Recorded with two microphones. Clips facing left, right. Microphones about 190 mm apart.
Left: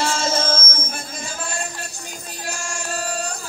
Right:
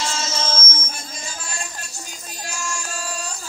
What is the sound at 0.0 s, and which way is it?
Music, 55° left (ahead or behind).